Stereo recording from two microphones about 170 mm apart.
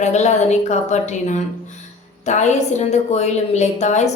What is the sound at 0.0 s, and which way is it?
A woman's voice, 40° left (ahead or behind).